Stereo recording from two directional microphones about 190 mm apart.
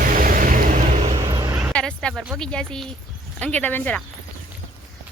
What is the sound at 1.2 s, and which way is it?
Vehicle, 20° right (ahead or behind).